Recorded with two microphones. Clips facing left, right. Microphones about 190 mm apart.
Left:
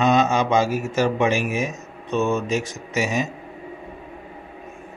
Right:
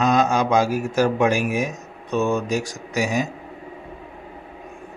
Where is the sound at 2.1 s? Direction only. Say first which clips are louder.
Even; 15° right (ahead or behind).